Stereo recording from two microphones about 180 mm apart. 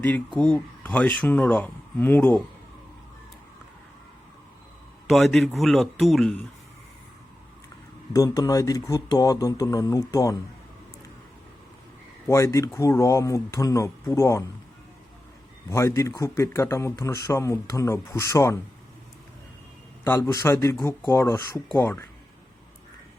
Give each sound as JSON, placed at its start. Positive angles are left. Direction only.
{"t": 0.3, "sound": "speech", "side_deg": 5}
{"t": 5.0, "sound": "speech", "side_deg": 0}
{"t": 8.1, "sound": "speech", "side_deg": 20}
{"t": 12.3, "sound": "speech", "side_deg": 15}
{"t": 15.7, "sound": "speech", "side_deg": 15}
{"t": 20.1, "sound": "speech", "side_deg": 15}